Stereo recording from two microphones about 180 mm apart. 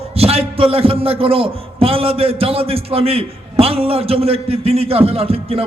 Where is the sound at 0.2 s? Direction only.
35° right (ahead or behind).